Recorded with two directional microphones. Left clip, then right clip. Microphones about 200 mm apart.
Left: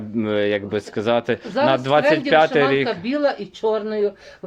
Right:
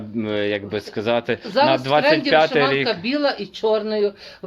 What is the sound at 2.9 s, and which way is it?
Speech, 5° right (ahead or behind).